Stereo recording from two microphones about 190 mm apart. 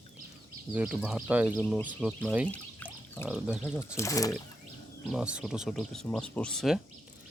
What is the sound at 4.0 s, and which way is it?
Speech, 15° left (ahead or behind).